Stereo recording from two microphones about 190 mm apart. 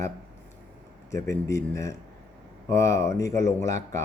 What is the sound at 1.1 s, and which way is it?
Speech, 15° left (ahead or behind).